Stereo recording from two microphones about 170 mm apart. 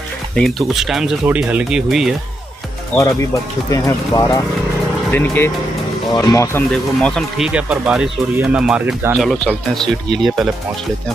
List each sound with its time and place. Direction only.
0.4 s speech: centre (ahead or behind)
3.7 s speech: 20° left (ahead or behind)
6.7 s speech: 5° left (ahead or behind)
9.8 s speech: centre (ahead or behind)